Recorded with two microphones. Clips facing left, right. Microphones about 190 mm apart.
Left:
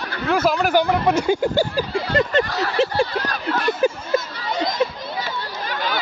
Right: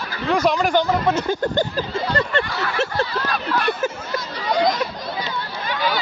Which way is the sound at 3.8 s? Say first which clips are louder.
Left 5 dB; 25° left (ahead or behind).